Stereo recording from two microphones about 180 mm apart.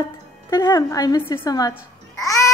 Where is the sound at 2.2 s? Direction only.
20° left (ahead or behind).